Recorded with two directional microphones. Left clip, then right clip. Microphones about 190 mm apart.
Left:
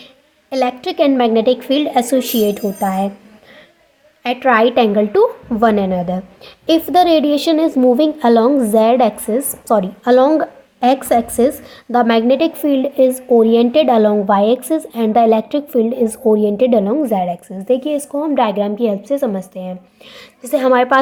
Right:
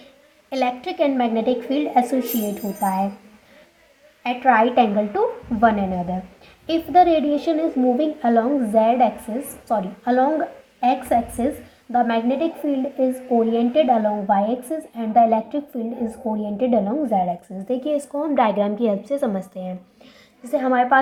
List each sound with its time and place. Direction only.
0.5 s a woman's voice: 35° left (ahead or behind)
4.2 s a woman's voice: 45° left (ahead or behind); by 19.7 s 25° left (ahead or behind)
20.1 s a woman's voice: 40° left (ahead or behind)